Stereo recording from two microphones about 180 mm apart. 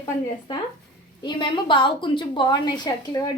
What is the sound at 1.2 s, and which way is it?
A woman's voice, 25° left (ahead or behind).